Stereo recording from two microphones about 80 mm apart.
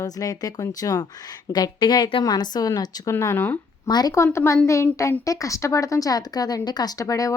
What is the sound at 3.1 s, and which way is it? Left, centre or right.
Speech, left.